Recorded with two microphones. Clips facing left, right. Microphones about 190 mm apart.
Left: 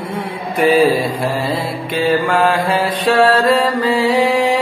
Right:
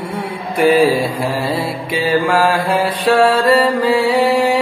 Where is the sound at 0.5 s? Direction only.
10° right (ahead or behind).